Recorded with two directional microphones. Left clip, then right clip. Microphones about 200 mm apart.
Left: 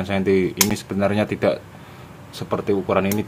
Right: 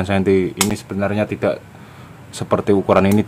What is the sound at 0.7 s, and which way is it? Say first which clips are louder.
Speech: even; centre (ahead or behind).